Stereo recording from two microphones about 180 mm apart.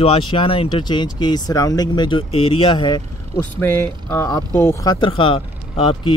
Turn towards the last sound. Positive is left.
turn(degrees=30)  # may be behind; listen again after turning